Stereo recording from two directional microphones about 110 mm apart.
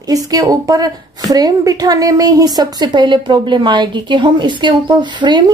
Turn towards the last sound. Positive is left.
turn(degrees=-45)  # may be behind; listen again after turning